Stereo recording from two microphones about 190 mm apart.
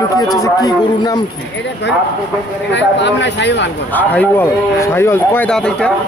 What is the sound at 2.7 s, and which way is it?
Speech, 70° left (ahead or behind).